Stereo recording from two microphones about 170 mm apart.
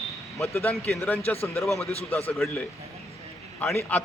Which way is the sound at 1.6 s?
Centre (ahead or behind).